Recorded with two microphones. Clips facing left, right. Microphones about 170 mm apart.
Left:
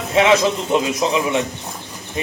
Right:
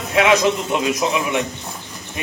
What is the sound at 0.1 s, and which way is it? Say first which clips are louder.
A man's voice: left 1 dB; 25° left (ahead or behind).